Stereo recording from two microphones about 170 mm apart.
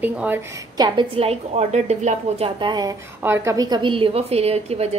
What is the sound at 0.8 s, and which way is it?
A woman's voice, 30° right (ahead or behind).